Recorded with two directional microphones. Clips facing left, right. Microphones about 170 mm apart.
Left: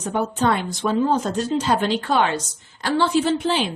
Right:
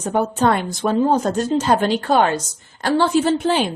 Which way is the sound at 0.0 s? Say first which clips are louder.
Right 3 dB; 45° right (ahead or behind).